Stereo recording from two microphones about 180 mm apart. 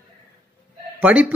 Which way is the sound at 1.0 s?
10° right (ahead or behind).